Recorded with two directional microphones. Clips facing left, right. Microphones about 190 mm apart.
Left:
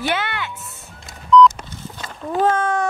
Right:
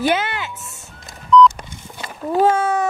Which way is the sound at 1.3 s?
Centre (ahead or behind).